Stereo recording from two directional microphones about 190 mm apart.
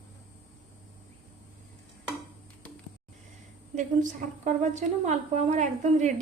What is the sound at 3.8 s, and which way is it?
A woman's voice, 40° right (ahead or behind).